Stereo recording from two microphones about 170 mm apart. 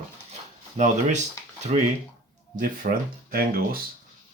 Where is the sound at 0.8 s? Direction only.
45° right (ahead or behind).